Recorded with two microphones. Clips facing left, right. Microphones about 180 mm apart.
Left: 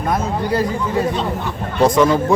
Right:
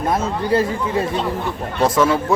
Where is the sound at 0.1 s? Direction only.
25° right (ahead or behind).